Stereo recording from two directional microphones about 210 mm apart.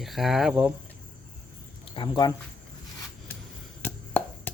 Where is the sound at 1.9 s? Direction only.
20° left (ahead or behind).